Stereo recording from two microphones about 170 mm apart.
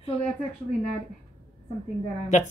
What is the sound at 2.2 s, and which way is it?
Speech, 45° left (ahead or behind).